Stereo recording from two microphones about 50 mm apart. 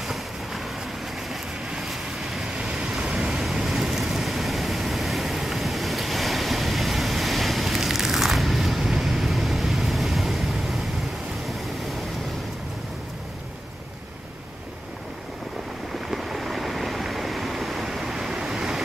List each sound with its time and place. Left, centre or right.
0.0 s vehicle: centre
1.7 s vehicle: centre
2.5 s waves: centre
3.6 s vehicle: centre
16.1 s waves: centre